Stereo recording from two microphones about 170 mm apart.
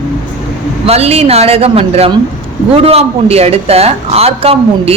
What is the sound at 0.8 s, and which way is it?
Speech, 35° right (ahead or behind).